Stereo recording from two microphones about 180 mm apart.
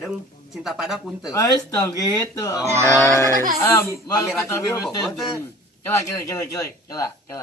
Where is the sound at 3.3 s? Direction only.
50° right (ahead or behind).